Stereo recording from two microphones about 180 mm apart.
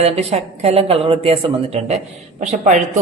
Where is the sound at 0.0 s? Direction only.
35° right (ahead or behind).